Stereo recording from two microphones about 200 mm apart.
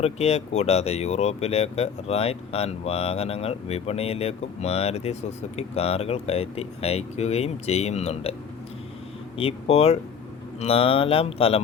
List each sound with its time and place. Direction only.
0.0 s speech: 30° left (ahead or behind)
9.4 s speech: 30° left (ahead or behind)